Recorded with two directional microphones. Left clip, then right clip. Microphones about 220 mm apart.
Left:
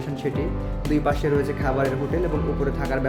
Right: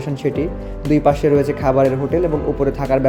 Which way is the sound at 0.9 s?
30° right (ahead or behind).